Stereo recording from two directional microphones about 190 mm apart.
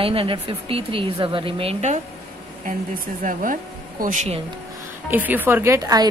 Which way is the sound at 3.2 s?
45° right (ahead or behind).